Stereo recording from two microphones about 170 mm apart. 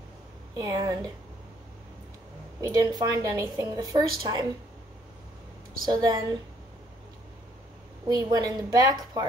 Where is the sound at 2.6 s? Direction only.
20° right (ahead or behind).